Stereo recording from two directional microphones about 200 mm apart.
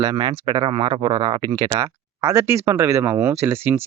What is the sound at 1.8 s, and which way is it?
Speech, 15° right (ahead or behind).